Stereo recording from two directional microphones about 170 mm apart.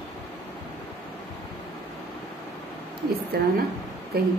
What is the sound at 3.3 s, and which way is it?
Speech, 65° right (ahead or behind).